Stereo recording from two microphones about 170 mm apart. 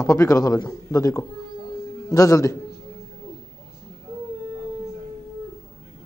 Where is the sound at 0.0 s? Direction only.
20° left (ahead or behind).